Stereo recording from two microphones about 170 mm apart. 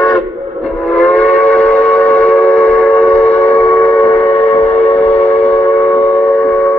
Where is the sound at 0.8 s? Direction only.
Centre (ahead or behind).